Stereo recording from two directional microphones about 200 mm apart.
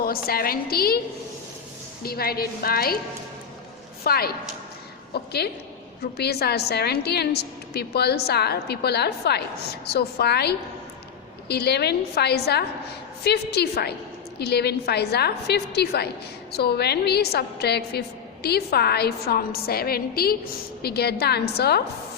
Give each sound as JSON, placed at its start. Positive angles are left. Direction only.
{"t": 0.0, "sound": "a woman's voice", "side_deg": 50}
{"t": 2.0, "sound": "a woman's voice", "side_deg": 50}
{"t": 4.0, "sound": "a woman's voice", "side_deg": 50}